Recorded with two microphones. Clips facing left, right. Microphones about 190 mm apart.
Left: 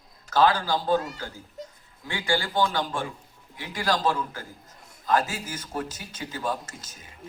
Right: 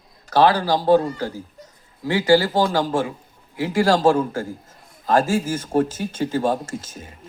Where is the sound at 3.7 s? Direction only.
25° right (ahead or behind).